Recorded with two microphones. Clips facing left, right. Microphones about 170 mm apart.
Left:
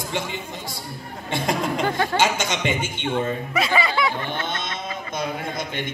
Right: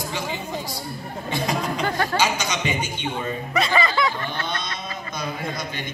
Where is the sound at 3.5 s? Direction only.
5° left (ahead or behind).